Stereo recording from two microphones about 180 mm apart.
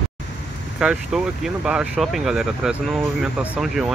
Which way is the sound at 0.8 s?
5° right (ahead or behind).